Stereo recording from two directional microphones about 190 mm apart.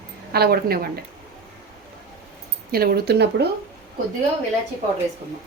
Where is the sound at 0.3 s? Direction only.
55° right (ahead or behind).